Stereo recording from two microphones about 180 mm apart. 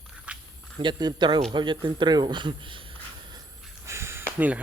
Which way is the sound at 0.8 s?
25° right (ahead or behind).